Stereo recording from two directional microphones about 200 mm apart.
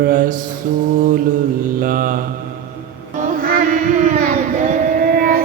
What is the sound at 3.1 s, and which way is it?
Child singing, 45° right (ahead or behind).